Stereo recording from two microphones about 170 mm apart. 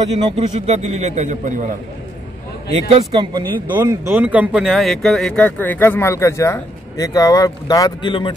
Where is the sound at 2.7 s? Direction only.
35° right (ahead or behind).